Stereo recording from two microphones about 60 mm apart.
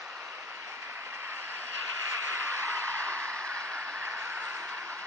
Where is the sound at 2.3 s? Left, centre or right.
Right.